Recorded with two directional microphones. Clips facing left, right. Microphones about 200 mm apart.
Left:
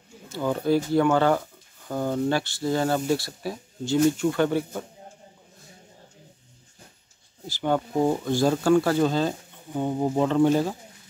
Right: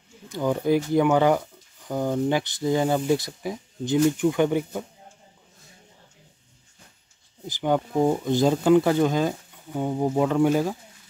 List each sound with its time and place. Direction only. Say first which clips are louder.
0.3 s speech: right 1 dB; 15° right (ahead or behind)
7.4 s speech: right 1 dB; 15° right (ahead or behind)
9.8 s speech: right 1 dB; 5° right (ahead or behind)